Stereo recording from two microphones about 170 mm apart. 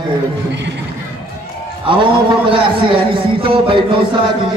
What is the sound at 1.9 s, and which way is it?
A man's voice, 30° right (ahead or behind).